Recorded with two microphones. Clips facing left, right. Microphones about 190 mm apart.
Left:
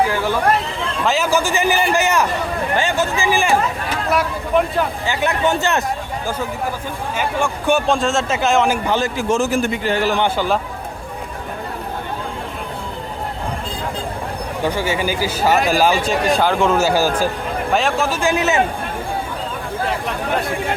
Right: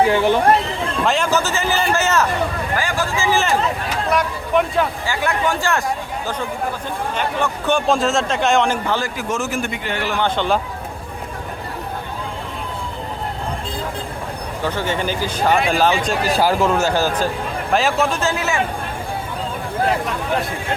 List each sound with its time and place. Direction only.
0.0 s speech: 20° right (ahead or behind)
1.0 s a man's voice: 5° left (ahead or behind)
4.1 s a man's voice: centre (ahead or behind)
5.0 s a man's voice: 20° left (ahead or behind)
7.2 s a man's voice: 10° left (ahead or behind)
8.9 s a man's voice: 25° left (ahead or behind)
10.2 s a man's voice: 5° left (ahead or behind)
14.6 s a man's voice: 10° left (ahead or behind)
16.2 s a man's voice: 5° right (ahead or behind)
18.2 s a man's voice: 15° left (ahead or behind)